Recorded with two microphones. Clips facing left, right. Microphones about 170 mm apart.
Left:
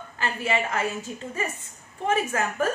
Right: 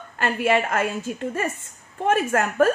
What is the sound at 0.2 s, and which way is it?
A woman's voice, 55° right (ahead or behind).